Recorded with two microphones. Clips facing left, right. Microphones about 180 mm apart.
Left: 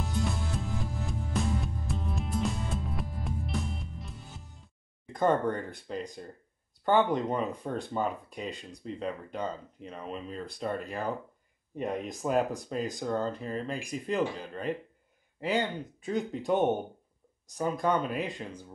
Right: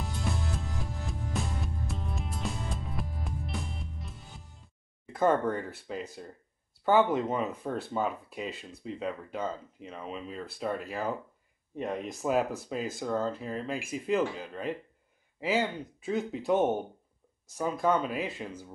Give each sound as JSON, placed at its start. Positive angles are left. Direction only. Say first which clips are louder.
{"t": 0.0, "sound": "music", "louder": "left 2 dB", "side_deg": 0}
{"t": 5.1, "sound": "speech", "louder": "even", "side_deg": -5}